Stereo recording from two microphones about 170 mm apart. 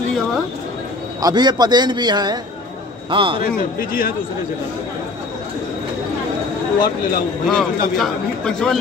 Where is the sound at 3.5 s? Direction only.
60° left (ahead or behind).